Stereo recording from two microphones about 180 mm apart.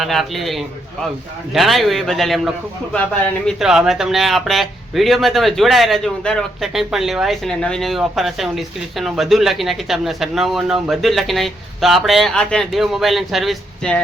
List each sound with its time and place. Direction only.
0.0 s speech: centre (ahead or behind)